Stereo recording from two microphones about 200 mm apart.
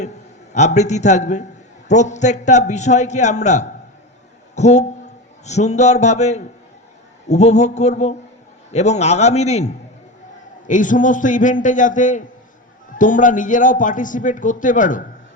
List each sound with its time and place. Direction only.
0.5 s a man's voice: 35° left (ahead or behind)